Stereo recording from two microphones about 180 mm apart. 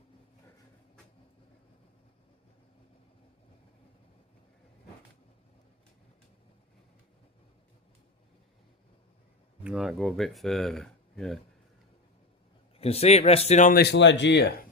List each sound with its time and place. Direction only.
9.6 s speech: 5° right (ahead or behind)
12.8 s speech: 35° left (ahead or behind)
13.7 s speech: 70° left (ahead or behind)